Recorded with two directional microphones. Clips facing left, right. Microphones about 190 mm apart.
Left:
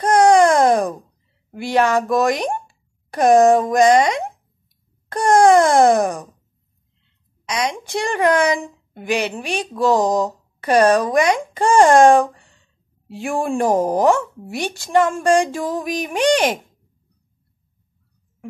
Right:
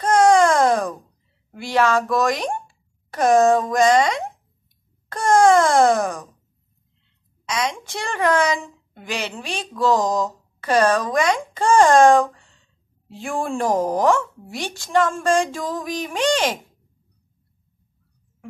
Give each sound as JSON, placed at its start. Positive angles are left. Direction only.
{"t": 0.0, "sound": "a sound", "side_deg": 15}
{"t": 1.5, "sound": "speech", "side_deg": 15}
{"t": 7.4, "sound": "a child's voice", "side_deg": 15}